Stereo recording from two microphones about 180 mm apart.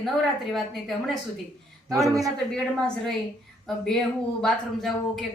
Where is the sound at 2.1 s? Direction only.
20° right (ahead or behind).